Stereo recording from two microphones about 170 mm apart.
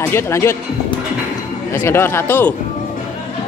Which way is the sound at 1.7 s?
15° left (ahead or behind).